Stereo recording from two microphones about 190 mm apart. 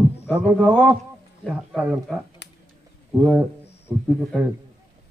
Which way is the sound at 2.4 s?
65° left (ahead or behind).